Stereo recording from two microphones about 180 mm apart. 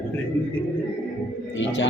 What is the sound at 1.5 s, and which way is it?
Speech, 90° left.